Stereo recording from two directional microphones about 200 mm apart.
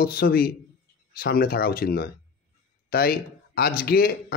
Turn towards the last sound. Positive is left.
turn(degrees=50)  # may be behind; listen again after turning